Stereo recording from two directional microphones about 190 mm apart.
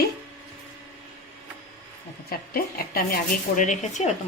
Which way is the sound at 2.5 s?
55° left (ahead or behind).